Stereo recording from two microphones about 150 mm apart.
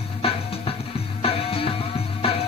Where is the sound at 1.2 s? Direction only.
40° left (ahead or behind).